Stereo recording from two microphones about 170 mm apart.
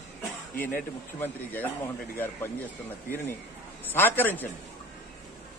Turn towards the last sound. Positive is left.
turn(degrees=10)  # may be behind; listen again after turning